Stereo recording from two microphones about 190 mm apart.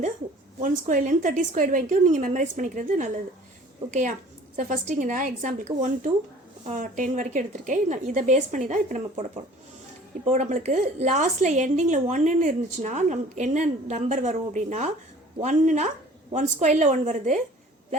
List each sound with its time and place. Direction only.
0.6 s a woman's voice: 45° right (ahead or behind)
4.5 s a woman's voice: 40° right (ahead or behind)
10.2 s a woman's voice: 35° right (ahead or behind)